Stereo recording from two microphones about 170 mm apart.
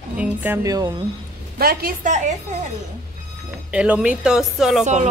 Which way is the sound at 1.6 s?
60° right (ahead or behind).